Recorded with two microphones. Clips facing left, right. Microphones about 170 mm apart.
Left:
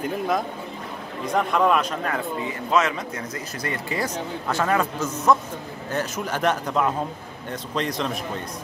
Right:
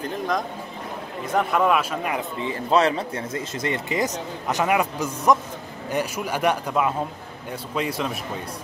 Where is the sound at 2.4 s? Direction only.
30° right (ahead or behind); by 8.1 s 5° right (ahead or behind).